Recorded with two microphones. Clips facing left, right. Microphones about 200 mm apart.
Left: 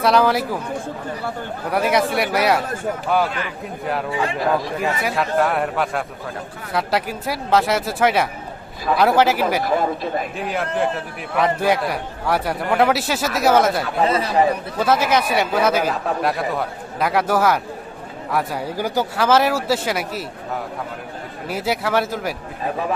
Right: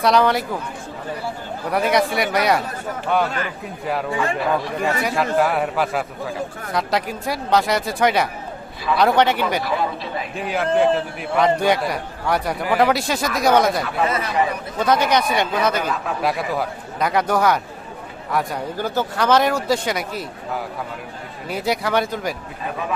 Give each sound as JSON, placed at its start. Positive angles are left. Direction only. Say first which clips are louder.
{"t": 0.0, "sound": "a man's voice", "louder": "even", "side_deg": 0}
{"t": 1.7, "sound": "a man's voice", "louder": "even", "side_deg": 0}
{"t": 4.8, "sound": "a man's voice", "louder": "right 1 dB", "side_deg": 0}
{"t": 9.6, "sound": "speech", "louder": "left 3 dB", "side_deg": 45}
{"t": 10.3, "sound": "a man's voice", "louder": "right 3 dB", "side_deg": 0}
{"t": 14.0, "sound": "speech", "louder": "left 4 dB", "side_deg": 30}
{"t": 14.8, "sound": "a man's voice", "louder": "right 1 dB", "side_deg": 5}
{"t": 15.8, "sound": "speech", "louder": "left 3 dB", "side_deg": 35}
{"t": 16.2, "sound": "a man's voice", "louder": "right 3 dB", "side_deg": 0}
{"t": 21.4, "sound": "a man's voice", "louder": "even", "side_deg": 5}